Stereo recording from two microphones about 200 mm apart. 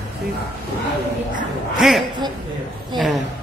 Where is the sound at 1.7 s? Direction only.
Centre (ahead or behind).